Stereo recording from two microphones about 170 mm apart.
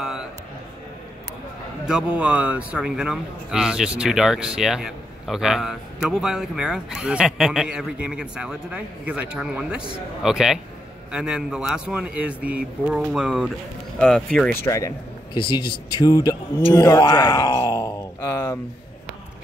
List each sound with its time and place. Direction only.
1.9 s a man's voice: 5° right (ahead or behind)
14.5 s speech: 15° left (ahead or behind)
15.3 s speech: 30° left (ahead or behind)